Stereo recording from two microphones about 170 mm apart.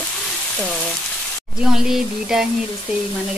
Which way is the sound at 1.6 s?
5° right (ahead or behind).